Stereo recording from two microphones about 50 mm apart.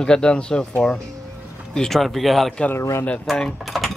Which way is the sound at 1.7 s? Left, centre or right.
Centre.